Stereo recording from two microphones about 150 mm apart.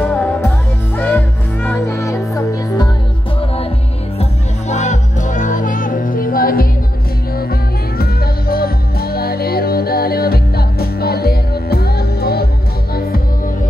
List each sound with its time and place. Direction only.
0.0 s music: 15° left (ahead or behind)
4.2 s music: 50° left (ahead or behind); by 6.7 s 75° left (ahead or behind)
8.0 s music: 90° left